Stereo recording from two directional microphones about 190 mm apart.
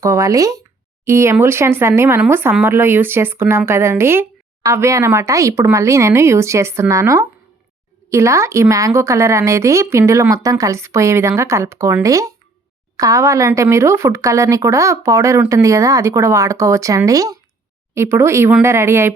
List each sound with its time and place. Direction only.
0.0 s speech: 15° right (ahead or behind)